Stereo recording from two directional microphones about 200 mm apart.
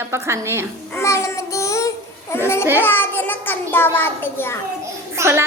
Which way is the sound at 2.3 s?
15° left (ahead or behind).